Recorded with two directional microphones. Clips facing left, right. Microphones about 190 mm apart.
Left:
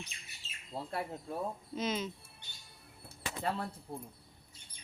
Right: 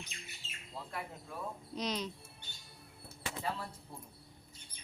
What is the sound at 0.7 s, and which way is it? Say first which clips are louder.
Speech: left 6 dB; 35° left (ahead or behind).